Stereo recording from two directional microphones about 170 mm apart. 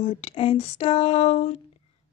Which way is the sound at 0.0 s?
40° left (ahead or behind).